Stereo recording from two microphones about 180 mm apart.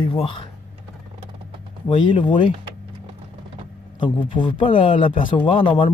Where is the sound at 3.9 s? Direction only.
25° left (ahead or behind).